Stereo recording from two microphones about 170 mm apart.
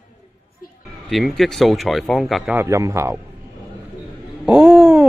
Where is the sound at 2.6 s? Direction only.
15° right (ahead or behind).